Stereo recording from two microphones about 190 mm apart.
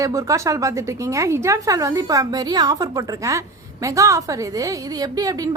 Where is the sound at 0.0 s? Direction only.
15° right (ahead or behind).